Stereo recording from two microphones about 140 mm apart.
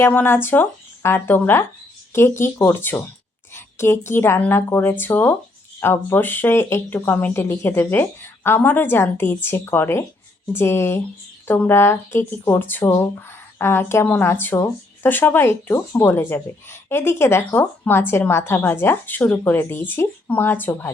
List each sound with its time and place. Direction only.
0.0 s speech: 15° left (ahead or behind)